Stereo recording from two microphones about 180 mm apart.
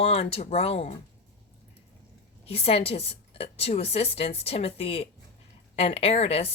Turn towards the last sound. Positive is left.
turn(degrees=35)  # may be behind; listen again after turning